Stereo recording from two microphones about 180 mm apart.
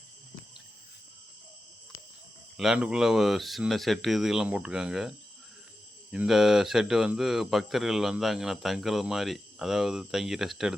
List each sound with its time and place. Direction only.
2.6 s speech: 5° right (ahead or behind)